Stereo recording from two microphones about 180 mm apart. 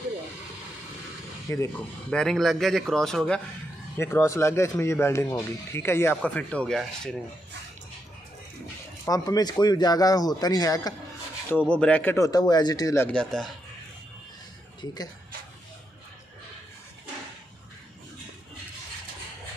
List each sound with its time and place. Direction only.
1.5 s speech: 15° left (ahead or behind)
2.0 s speech: 5° left (ahead or behind)
3.9 s speech: 15° left (ahead or behind)
9.0 s speech: 20° left (ahead or behind)
11.5 s speech: 5° left (ahead or behind)